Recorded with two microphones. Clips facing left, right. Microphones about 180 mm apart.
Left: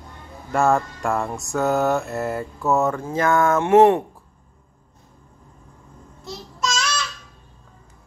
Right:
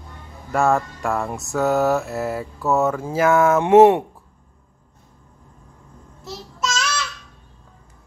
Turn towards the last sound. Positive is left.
turn(degrees=-5)  # may be behind; listen again after turning